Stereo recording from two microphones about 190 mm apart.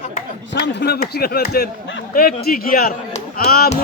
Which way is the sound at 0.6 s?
65° left (ahead or behind).